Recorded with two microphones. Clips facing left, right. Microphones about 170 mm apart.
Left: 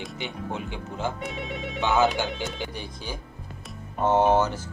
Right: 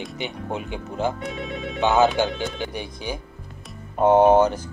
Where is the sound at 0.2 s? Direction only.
20° right (ahead or behind).